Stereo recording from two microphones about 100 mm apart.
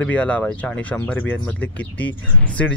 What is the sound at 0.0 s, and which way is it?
Speech, 15° left (ahead or behind).